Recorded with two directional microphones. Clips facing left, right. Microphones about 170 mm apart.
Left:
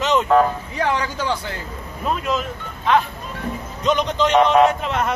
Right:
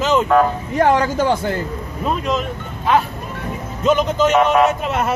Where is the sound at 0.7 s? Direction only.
45° right (ahead or behind).